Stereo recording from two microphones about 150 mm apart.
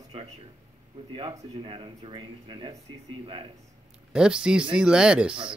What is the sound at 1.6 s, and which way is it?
Speech, 35° right (ahead or behind).